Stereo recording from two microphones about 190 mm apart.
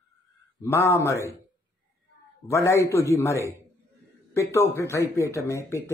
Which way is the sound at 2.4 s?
15° left (ahead or behind).